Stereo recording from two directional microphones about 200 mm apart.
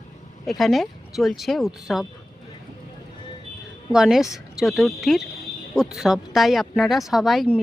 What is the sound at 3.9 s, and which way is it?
Speech, centre (ahead or behind).